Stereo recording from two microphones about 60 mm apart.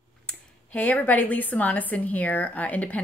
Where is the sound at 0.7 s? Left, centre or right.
Left.